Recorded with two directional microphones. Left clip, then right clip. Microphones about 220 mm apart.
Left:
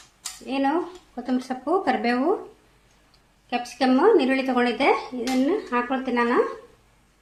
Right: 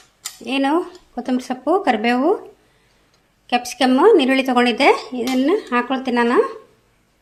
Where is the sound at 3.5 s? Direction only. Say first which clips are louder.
Right 5 dB; 40° right (ahead or behind).